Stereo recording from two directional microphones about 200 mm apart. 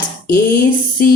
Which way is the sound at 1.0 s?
45° left (ahead or behind).